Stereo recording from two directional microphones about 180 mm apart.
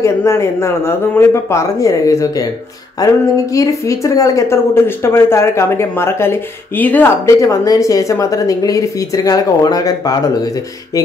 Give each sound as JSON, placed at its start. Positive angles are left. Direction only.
{"t": 0.0, "sound": "speech", "side_deg": 15}
{"t": 3.0, "sound": "a sound", "side_deg": 20}
{"t": 3.5, "sound": "speech", "side_deg": 15}